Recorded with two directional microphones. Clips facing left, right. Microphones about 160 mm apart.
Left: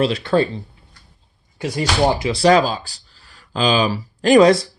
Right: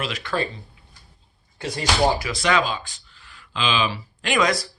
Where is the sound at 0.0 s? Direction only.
30° left (ahead or behind).